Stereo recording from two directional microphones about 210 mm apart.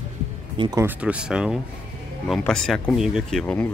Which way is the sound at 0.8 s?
5° right (ahead or behind).